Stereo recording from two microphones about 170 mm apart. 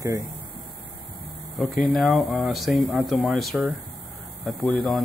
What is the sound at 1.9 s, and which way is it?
Speech, centre (ahead or behind).